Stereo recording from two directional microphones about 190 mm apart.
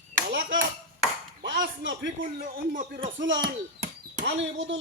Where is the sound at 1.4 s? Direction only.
70° right (ahead or behind).